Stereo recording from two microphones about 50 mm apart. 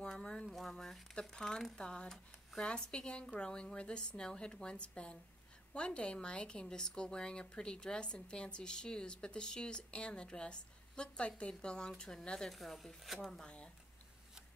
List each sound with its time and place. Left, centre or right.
0.0 s a sound: centre
0.5 s a woman's voice: centre
12.5 s speech: centre
13.4 s speech: left